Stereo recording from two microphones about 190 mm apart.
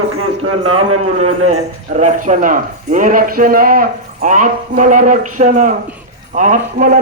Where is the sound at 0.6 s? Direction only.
30° right (ahead or behind).